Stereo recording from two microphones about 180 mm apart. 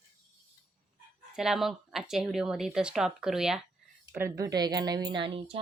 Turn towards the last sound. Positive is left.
turn(degrees=-30)  # may be behind; listen again after turning